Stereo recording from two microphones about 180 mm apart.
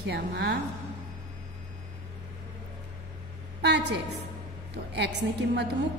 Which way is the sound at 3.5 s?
70° right (ahead or behind).